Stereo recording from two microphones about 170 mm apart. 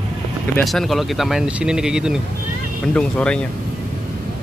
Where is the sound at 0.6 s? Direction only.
Centre (ahead or behind).